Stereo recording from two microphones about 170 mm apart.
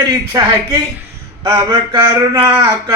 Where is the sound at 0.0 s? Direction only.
20° right (ahead or behind).